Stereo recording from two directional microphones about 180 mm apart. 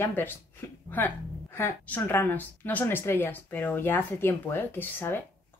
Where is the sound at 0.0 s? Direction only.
10° left (ahead or behind).